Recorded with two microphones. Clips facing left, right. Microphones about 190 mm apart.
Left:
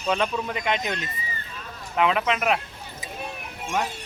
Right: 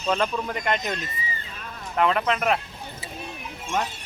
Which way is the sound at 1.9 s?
5° left (ahead or behind).